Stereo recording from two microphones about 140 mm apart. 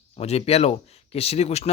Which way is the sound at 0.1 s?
50° left (ahead or behind).